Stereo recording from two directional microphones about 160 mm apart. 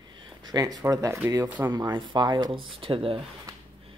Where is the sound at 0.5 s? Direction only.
25° right (ahead or behind).